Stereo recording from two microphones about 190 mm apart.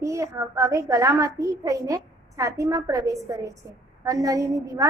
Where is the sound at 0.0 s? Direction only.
15° right (ahead or behind).